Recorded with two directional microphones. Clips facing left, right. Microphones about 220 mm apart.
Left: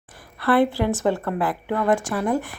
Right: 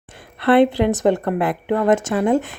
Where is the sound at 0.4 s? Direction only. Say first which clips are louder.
Right 5 dB; 20° right (ahead or behind).